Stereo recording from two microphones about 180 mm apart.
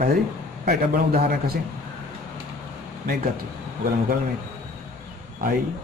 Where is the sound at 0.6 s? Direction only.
60° right (ahead or behind).